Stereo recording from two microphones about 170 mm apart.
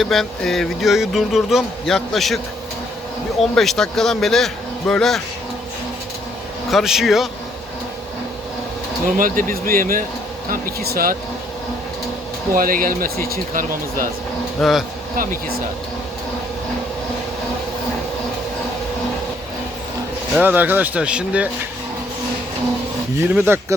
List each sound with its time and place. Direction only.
0.0 s speech: centre (ahead or behind)
3.5 s speech: centre (ahead or behind)
6.7 s speech: centre (ahead or behind)
9.1 s speech: 55° right (ahead or behind)
12.5 s speech: 55° right (ahead or behind)
14.6 s speech: centre (ahead or behind)
15.1 s speech: 55° right (ahead or behind)
20.3 s speech: 10° right (ahead or behind)
23.3 s speech: 15° right (ahead or behind)